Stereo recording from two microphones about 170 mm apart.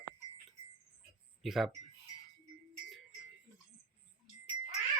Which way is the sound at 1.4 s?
Centre (ahead or behind).